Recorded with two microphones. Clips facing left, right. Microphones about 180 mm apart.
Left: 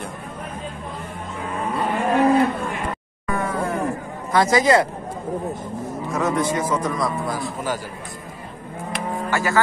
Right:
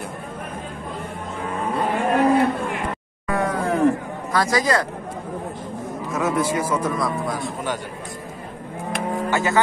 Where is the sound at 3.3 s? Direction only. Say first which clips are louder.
Right 2 dB; 70° right (ahead or behind).